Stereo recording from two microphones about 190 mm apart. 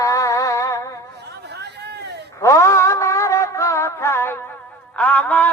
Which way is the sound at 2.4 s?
15° left (ahead or behind).